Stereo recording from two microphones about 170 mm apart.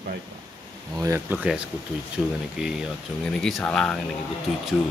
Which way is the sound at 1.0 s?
15° right (ahead or behind).